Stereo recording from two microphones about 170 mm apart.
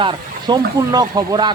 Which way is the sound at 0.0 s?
25° right (ahead or behind).